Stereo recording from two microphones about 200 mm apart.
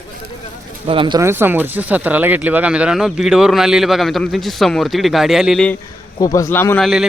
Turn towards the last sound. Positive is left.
turn(degrees=10)  # may be behind; listen again after turning